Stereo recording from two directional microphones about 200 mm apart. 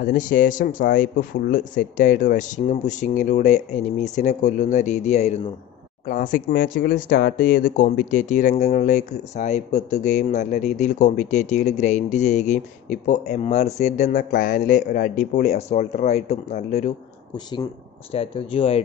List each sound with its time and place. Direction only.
0.1 s speech: 45° left (ahead or behind)
18.1 s speech: 30° left (ahead or behind)